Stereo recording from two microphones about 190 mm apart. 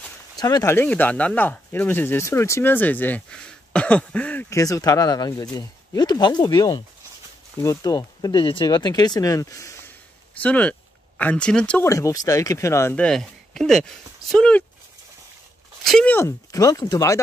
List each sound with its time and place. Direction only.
0.4 s speech: 20° left (ahead or behind); by 13.9 s 5° left (ahead or behind)
15.8 s speech: centre (ahead or behind); by 17.2 s 20° left (ahead or behind)